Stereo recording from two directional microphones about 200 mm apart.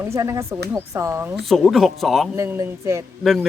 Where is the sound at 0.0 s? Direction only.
15° right (ahead or behind).